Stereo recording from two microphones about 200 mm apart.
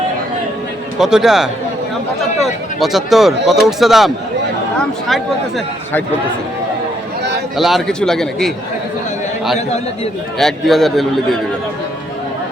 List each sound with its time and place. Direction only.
0.9 s speech: centre (ahead or behind)
7.5 s speech: centre (ahead or behind)
9.6 s a man's voice: 35° left (ahead or behind)
10.3 s speech: centre (ahead or behind)